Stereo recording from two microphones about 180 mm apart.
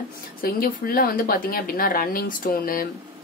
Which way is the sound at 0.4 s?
55° left (ahead or behind).